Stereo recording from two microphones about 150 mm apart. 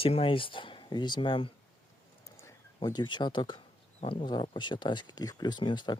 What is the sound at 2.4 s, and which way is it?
Speech, 25° left (ahead or behind).